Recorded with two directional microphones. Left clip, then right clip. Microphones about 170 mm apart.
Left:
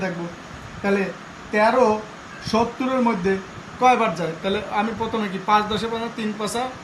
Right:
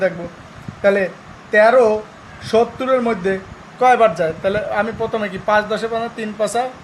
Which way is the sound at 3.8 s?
55° right (ahead or behind).